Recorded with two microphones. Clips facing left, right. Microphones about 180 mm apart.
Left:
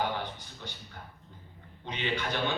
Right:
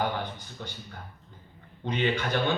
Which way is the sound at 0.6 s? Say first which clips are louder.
Right 4 dB; 50° right (ahead or behind).